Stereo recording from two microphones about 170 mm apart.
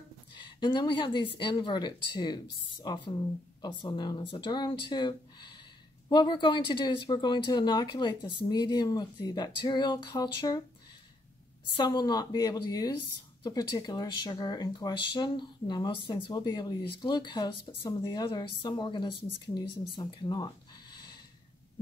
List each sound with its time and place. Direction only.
0.3 s speech: 25° left (ahead or behind)
11.7 s speech: 25° left (ahead or behind)
19.9 s a sound: 25° left (ahead or behind)